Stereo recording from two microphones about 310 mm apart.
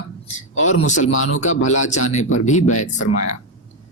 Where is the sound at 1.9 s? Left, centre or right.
Left.